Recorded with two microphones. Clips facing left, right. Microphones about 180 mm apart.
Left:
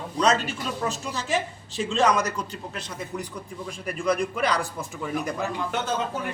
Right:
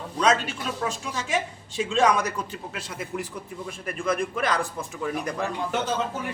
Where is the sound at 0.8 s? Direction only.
Centre (ahead or behind).